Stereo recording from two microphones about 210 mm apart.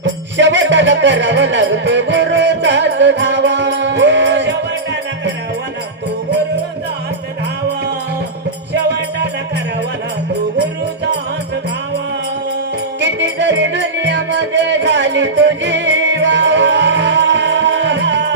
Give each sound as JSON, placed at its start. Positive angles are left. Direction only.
{"t": 0.0, "sound": "music", "side_deg": -60}
{"t": 8.7, "sound": "music", "side_deg": -55}
{"t": 13.0, "sound": "music", "side_deg": -60}